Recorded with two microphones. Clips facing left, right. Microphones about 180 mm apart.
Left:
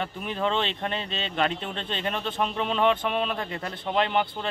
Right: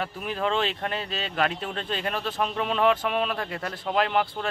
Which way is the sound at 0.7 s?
5° right (ahead or behind).